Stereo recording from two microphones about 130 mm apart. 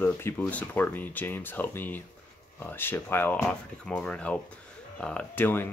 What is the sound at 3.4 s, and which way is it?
Speech, 5° left (ahead or behind).